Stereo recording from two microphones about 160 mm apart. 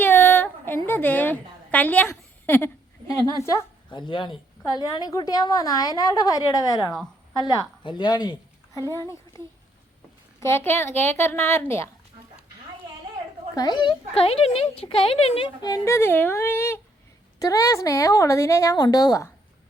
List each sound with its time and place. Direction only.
0.0 s a sound: 15° left (ahead or behind)
3.8 s a woman's voice: 30° left (ahead or behind)
10.4 s a woman's voice: 15° left (ahead or behind)
13.5 s a woman's voice: 25° left (ahead or behind)